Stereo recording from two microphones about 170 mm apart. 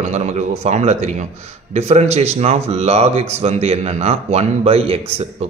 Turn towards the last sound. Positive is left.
turn(degrees=-35)  # may be behind; listen again after turning